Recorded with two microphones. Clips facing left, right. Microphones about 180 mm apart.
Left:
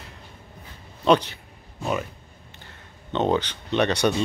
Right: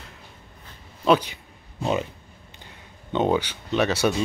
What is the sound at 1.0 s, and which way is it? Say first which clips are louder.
Speech: left 1 dB; 10° right (ahead or behind).